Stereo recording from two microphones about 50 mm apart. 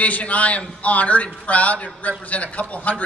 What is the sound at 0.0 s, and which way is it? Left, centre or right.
A man's voice, left.